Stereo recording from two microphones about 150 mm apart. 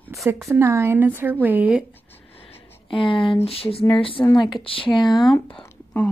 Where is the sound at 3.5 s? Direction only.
40° left (ahead or behind).